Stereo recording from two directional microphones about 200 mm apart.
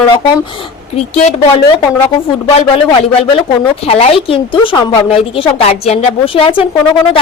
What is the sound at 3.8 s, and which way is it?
A woman's voice, 30° left (ahead or behind).